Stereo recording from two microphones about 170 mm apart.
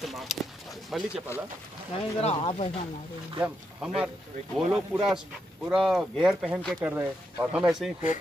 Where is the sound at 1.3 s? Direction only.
15° left (ahead or behind).